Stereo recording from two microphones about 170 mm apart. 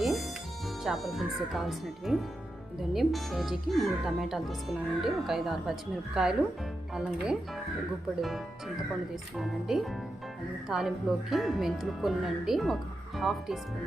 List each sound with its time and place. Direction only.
0.0 s music: centre (ahead or behind)
0.9 s speech: centre (ahead or behind)
9.4 s speech: centre (ahead or behind)